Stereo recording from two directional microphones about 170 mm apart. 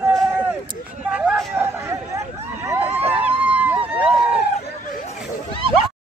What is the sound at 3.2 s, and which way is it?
Run, 10° right (ahead or behind).